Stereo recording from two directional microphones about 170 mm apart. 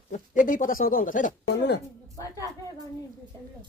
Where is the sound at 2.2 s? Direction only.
20° left (ahead or behind).